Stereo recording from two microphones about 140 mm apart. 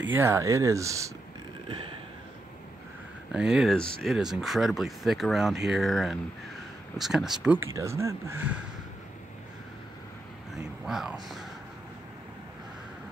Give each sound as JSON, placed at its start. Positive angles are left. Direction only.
{"t": 0.1, "sound": "speech", "side_deg": -20}
{"t": 3.3, "sound": "speech", "side_deg": -5}
{"t": 7.7, "sound": "speech", "side_deg": -20}
{"t": 10.5, "sound": "speech", "side_deg": -5}